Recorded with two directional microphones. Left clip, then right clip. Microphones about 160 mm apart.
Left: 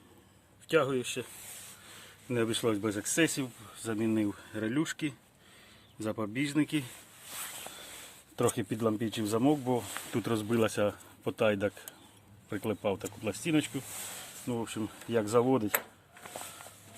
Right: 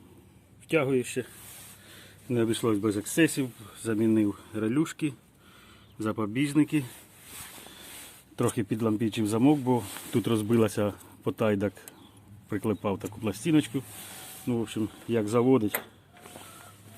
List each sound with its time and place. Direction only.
0.7 s speech: 5° left (ahead or behind)
2.2 s speech: 20° left (ahead or behind)
8.4 s speech: 15° left (ahead or behind)